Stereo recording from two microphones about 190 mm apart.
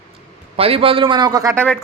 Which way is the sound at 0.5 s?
30° right (ahead or behind).